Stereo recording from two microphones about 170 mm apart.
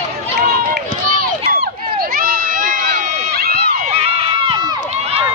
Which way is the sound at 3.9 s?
30° right (ahead or behind).